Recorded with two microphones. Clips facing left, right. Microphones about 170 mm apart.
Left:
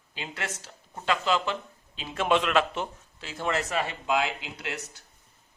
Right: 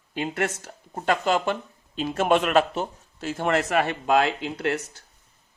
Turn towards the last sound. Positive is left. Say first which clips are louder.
# right 10 dB
turn(degrees=-55)  # may be behind; listen again after turning